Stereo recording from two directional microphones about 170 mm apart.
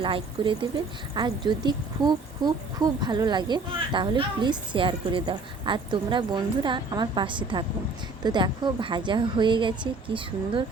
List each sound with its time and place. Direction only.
0.0 s speech: 30° right (ahead or behind)